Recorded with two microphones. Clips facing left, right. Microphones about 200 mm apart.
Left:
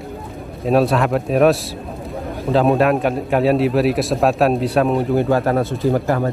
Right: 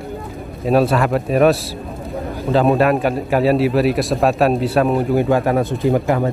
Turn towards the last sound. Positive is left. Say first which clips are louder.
# right 1 dB
turn(degrees=-15)  # may be behind; listen again after turning